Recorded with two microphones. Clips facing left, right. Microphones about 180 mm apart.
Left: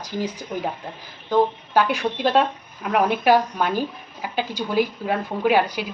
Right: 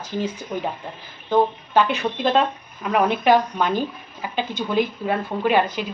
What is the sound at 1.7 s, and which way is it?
A woman's voice, 10° left (ahead or behind).